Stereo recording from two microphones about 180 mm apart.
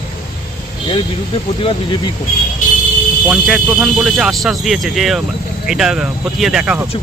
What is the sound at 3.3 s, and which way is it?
Speech, centre (ahead or behind).